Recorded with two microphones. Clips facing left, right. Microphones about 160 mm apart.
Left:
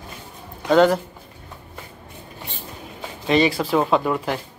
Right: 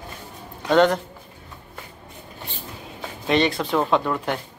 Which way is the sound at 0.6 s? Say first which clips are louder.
Left 2 dB; 5° left (ahead or behind).